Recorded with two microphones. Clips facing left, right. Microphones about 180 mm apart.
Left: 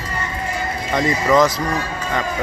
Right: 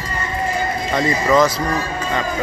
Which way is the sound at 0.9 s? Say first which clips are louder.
Even; 15° left (ahead or behind).